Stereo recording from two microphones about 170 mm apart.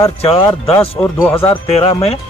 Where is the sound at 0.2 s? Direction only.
35° left (ahead or behind).